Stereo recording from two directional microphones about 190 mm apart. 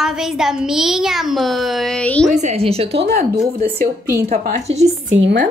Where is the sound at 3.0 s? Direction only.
55° right (ahead or behind).